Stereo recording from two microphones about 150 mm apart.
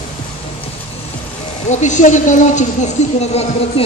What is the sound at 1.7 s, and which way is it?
A woman's voice, 55° left (ahead or behind).